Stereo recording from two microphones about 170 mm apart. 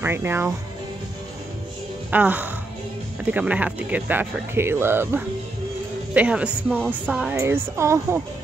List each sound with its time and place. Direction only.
0.0 s speech: 15° right (ahead or behind)
2.0 s speech: 10° right (ahead or behind)